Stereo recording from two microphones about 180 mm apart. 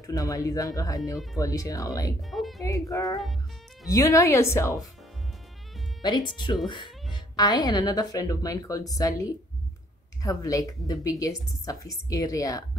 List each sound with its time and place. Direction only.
0.0 s speech: 20° left (ahead or behind)
2.3 s music: centre (ahead or behind)
2.6 s speech: 20° left (ahead or behind)
6.0 s speech: 25° left (ahead or behind)
10.2 s speech: 20° left (ahead or behind)